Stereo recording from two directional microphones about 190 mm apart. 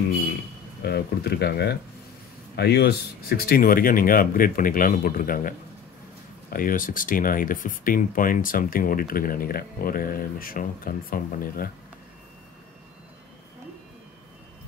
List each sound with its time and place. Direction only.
0.8 s speech: 55° left (ahead or behind)
6.5 s speech: 45° left (ahead or behind)